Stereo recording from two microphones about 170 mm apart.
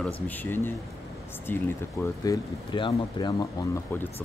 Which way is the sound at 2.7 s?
25° left (ahead or behind).